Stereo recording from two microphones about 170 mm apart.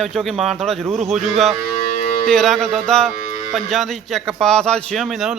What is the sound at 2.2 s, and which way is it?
A man's voice, centre (ahead or behind).